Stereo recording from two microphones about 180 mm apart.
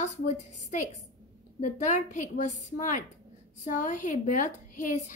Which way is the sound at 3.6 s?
45° left (ahead or behind).